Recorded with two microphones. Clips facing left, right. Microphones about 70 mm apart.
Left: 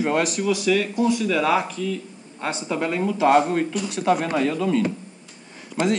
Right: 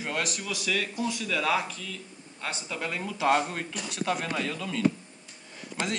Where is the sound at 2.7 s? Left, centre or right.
Left.